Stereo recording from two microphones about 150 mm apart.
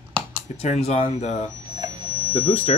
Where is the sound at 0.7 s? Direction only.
45° left (ahead or behind).